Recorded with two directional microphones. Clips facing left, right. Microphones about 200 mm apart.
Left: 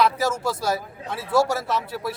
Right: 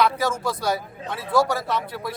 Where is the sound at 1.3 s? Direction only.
25° left (ahead or behind).